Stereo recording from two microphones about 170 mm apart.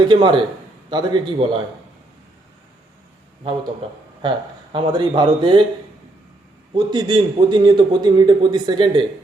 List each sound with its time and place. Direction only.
0.1 s a man's voice: 30° right (ahead or behind)
4.2 s a man's voice: 30° right (ahead or behind)
6.7 s a man's voice: 25° right (ahead or behind)